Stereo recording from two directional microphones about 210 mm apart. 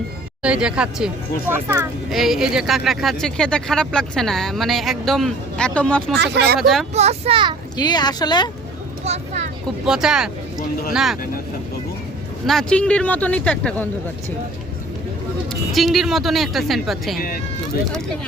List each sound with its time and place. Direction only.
0.4 s speech: 5° right (ahead or behind)
6.1 s speech: 55° right (ahead or behind)
6.6 s speech: centre (ahead or behind)
6.9 s a child's voice: 30° right (ahead or behind)
7.8 s speech: 20° left (ahead or behind)
9.0 s speech: 30° right (ahead or behind)
9.8 s speech: 5° right (ahead or behind)
12.5 s speech: 5° left (ahead or behind)
15.7 s speech: centre (ahead or behind)
17.2 s speech: 45° left (ahead or behind)